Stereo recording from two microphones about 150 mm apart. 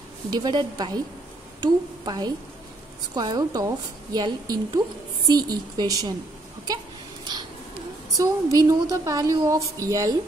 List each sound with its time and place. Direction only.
0.3 s a woman's voice: 30° right (ahead or behind)
8.2 s a woman's voice: 25° right (ahead or behind)